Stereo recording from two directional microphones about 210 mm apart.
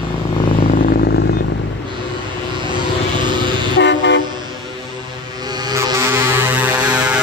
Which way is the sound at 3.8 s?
55° left (ahead or behind).